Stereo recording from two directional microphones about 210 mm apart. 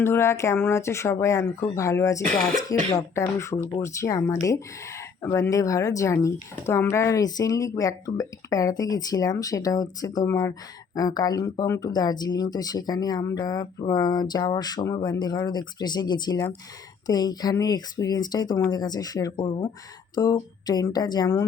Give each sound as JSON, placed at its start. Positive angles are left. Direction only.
{"t": 0.0, "sound": "speech", "side_deg": 10}